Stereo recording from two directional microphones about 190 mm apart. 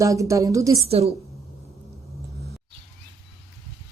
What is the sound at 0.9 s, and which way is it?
Speech, 30° right (ahead or behind).